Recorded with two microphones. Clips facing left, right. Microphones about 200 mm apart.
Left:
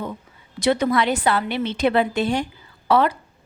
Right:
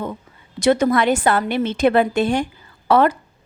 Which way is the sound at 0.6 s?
45° right (ahead or behind).